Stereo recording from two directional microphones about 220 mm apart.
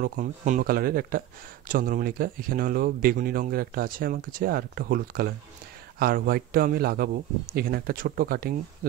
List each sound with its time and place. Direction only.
0.0 s a man's voice: 40° right (ahead or behind)